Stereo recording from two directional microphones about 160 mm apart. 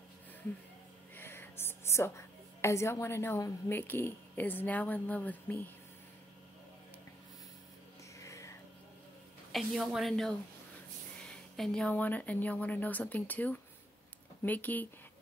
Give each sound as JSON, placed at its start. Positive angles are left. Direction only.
{"t": 1.1, "sound": "a woman's voice", "side_deg": 15}
{"t": 8.2, "sound": "a sound", "side_deg": 20}
{"t": 9.5, "sound": "a woman's voice", "side_deg": 0}